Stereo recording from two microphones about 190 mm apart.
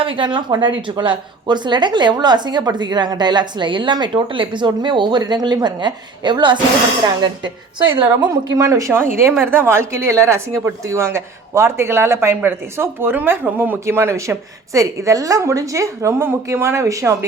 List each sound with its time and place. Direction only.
0.0 s a woman's voice: 25° right (ahead or behind)